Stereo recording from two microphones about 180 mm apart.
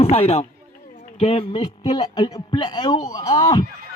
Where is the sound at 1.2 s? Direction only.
35° left (ahead or behind).